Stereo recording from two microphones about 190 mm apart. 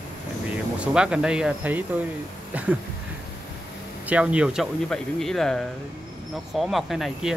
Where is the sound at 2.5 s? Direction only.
5° right (ahead or behind).